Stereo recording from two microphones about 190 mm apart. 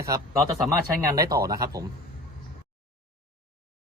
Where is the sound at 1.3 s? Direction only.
20° right (ahead or behind).